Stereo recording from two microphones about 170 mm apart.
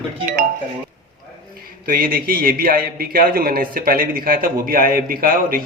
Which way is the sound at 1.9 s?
60° right (ahead or behind).